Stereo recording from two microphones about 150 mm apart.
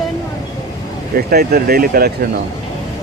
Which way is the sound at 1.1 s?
85° right.